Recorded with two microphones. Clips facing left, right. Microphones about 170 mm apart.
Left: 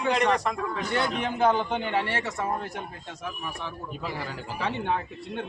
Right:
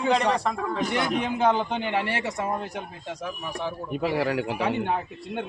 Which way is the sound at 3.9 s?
70° right (ahead or behind).